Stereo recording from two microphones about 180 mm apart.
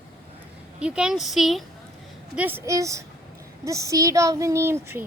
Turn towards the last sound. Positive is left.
turn(degrees=-10)  # may be behind; listen again after turning